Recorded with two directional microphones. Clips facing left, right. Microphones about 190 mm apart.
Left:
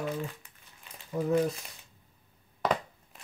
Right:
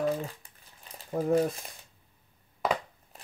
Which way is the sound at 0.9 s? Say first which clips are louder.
Right 2 dB; 35° right (ahead or behind).